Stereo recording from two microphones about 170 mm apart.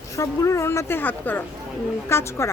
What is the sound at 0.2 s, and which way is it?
Speech, 20° left (ahead or behind).